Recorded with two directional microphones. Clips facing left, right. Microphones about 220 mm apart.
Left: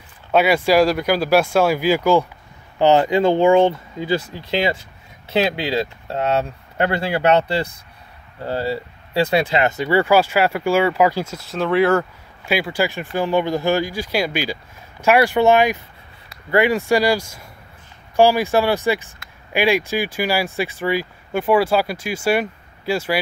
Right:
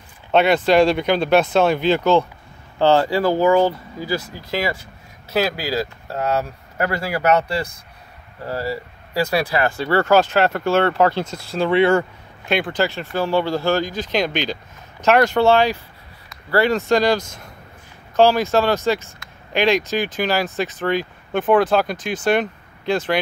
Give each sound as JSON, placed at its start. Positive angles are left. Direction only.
{"t": 0.3, "sound": "speech", "side_deg": 5}